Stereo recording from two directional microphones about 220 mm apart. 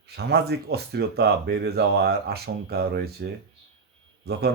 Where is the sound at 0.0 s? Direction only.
45° right (ahead or behind).